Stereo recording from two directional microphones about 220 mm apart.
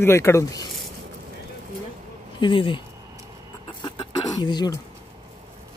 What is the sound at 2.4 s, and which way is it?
Speech, 25° left (ahead or behind).